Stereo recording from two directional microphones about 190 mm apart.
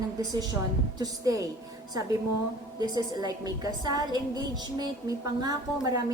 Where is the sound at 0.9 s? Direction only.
20° right (ahead or behind).